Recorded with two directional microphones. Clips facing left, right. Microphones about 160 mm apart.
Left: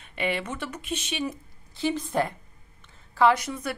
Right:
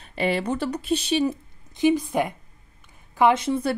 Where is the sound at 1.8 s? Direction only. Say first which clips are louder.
Right 5 dB; 15° right (ahead or behind).